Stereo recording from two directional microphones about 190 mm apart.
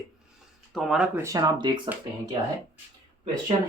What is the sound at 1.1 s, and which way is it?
Speech, 15° right (ahead or behind).